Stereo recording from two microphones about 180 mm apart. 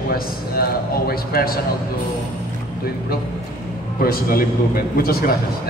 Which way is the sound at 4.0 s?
55° left (ahead or behind).